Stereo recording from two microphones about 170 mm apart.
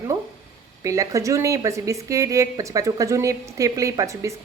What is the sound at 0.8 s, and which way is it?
A woman's voice, 20° right (ahead or behind).